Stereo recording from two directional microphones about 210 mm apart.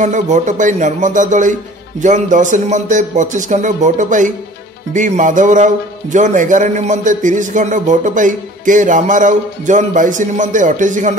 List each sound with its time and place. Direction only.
0.0 s a man's voice: 35° right (ahead or behind)